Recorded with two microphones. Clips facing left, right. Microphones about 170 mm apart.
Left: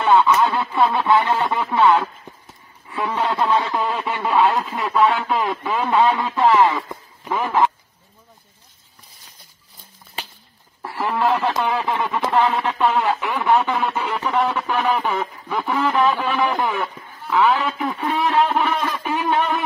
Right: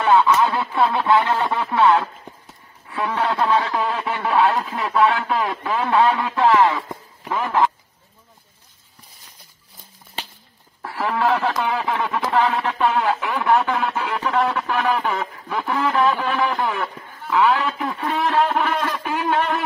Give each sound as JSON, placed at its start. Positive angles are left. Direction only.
{"t": 0.0, "sound": "speech", "side_deg": 0}
{"t": 10.8, "sound": "speech", "side_deg": 5}
{"t": 17.3, "sound": "a man's voice", "side_deg": 20}
{"t": 18.0, "sound": "a sound", "side_deg": 5}